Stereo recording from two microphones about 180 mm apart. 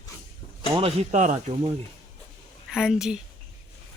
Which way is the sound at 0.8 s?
35° right (ahead or behind).